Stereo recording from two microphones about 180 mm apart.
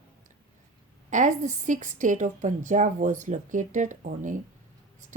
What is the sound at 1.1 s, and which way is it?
A woman's voice, 45° right (ahead or behind).